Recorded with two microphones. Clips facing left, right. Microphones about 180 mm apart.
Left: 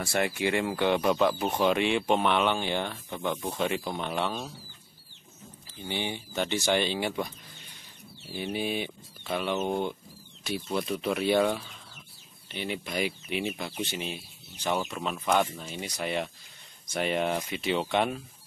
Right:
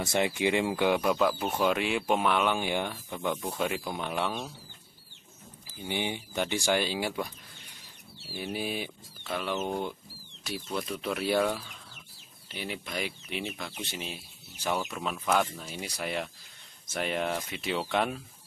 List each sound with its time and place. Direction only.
0.0 s speech: 20° right (ahead or behind)
5.9 s speech: 15° right (ahead or behind)
8.3 s speech: 5° right (ahead or behind)